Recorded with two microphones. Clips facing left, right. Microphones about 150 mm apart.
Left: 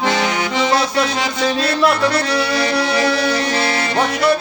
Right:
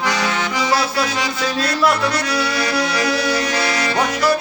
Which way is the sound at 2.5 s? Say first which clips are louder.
Left 3 dB; 30° left (ahead or behind).